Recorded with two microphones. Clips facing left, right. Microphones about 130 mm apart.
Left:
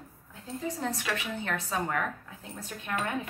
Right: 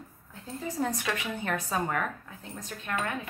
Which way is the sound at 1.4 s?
5° right (ahead or behind).